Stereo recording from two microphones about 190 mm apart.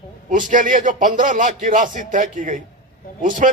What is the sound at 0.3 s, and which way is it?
Speech, 45° right (ahead or behind).